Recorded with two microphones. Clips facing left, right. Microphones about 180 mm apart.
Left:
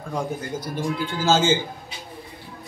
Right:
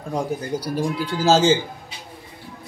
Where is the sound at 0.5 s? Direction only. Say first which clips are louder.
Right 4 dB; 15° right (ahead or behind).